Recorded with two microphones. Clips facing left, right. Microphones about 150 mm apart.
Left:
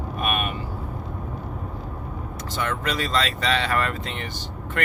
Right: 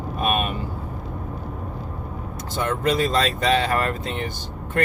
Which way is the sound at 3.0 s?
40° right (ahead or behind).